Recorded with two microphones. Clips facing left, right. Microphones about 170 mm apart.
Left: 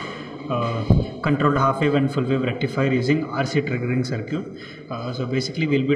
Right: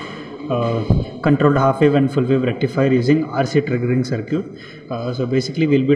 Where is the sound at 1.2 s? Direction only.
45° right (ahead or behind).